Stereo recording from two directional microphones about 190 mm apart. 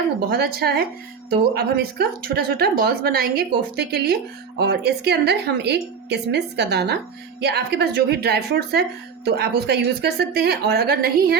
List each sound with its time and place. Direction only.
0.2 s a woman's voice: 55° right (ahead or behind)